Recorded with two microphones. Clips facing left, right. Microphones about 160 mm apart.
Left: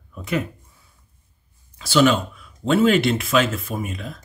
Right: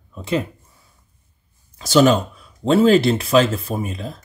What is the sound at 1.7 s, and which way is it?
Speech, 40° right (ahead or behind).